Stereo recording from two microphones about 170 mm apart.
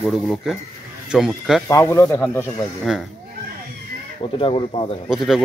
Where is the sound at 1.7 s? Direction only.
15° left (ahead or behind).